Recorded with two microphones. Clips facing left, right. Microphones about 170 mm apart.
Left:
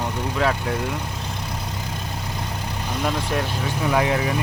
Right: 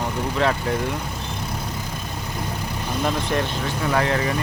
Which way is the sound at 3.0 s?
5° left (ahead or behind).